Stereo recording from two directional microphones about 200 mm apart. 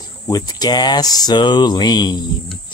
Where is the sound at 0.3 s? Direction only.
20° left (ahead or behind).